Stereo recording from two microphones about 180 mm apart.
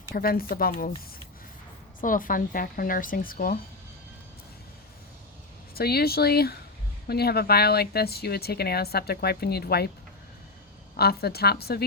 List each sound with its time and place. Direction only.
0.1 s speech: 55° left (ahead or behind)
2.0 s speech: 50° left (ahead or behind)
5.7 s speech: 60° left (ahead or behind)
10.9 s speech: 60° left (ahead or behind)